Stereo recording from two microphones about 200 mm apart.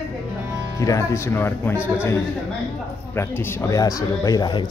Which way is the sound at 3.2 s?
10° left (ahead or behind).